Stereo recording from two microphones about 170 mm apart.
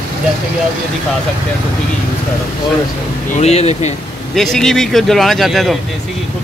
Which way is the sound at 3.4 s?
40° left (ahead or behind).